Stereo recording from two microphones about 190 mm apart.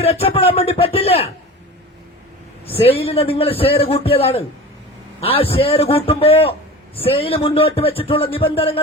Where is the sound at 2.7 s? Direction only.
30° left (ahead or behind).